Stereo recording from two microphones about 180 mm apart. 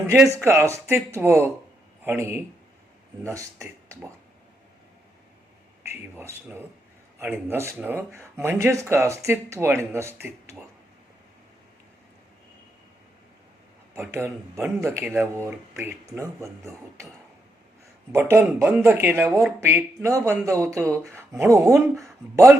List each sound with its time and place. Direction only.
0.1 s speech: 10° right (ahead or behind)
5.8 s speech: 15° right (ahead or behind)
13.9 s speech: 15° right (ahead or behind)
18.1 s speech: 15° right (ahead or behind)
19.6 s speech: 15° right (ahead or behind)
21.7 s speech: centre (ahead or behind)